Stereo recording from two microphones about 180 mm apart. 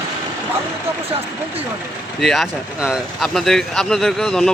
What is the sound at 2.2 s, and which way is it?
Speech, centre (ahead or behind).